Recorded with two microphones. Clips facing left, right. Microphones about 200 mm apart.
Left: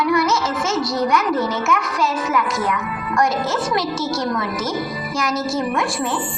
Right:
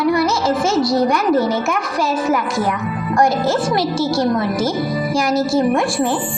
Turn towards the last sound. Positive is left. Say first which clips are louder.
# right 6 dB
turn(degrees=-30)  # may be behind; listen again after turning